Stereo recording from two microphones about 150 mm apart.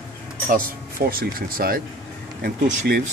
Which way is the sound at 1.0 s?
80° right.